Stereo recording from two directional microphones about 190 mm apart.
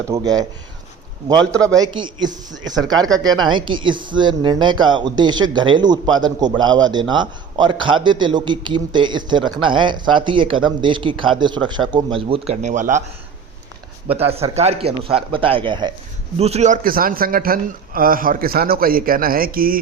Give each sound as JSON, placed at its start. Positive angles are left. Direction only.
{"t": 0.1, "sound": "a man's voice", "side_deg": -20}
{"t": 1.6, "sound": "a man's voice", "side_deg": -20}
{"t": 14.1, "sound": "a man's voice", "side_deg": -30}